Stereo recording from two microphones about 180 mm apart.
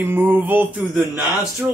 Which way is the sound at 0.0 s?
10° right (ahead or behind).